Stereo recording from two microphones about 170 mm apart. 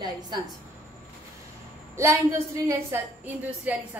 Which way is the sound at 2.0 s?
15° right (ahead or behind).